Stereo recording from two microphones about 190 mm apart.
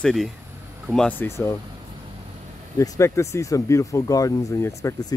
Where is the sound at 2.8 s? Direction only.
15° left (ahead or behind).